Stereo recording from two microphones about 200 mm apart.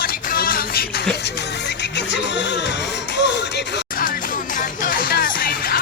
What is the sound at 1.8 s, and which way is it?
Music, 60° left (ahead or behind).